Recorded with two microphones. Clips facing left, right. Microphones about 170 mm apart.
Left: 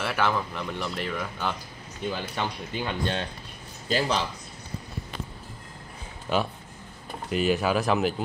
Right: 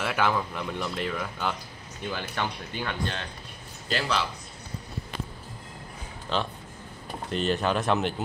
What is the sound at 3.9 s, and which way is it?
Speech, 40° left (ahead or behind).